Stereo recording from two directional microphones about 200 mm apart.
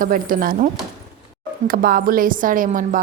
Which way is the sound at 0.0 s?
45° right (ahead or behind).